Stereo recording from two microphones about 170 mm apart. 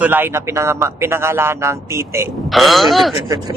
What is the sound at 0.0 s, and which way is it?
A man's voice, 10° right (ahead or behind).